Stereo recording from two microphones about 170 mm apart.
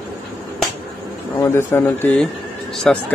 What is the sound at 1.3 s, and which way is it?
A man's voice, 15° left (ahead or behind).